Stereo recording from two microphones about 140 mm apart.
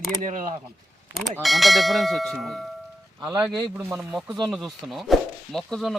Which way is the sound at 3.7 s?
5° right (ahead or behind).